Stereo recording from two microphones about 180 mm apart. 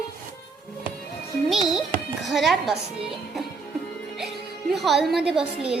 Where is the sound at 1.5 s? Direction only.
Centre (ahead or behind).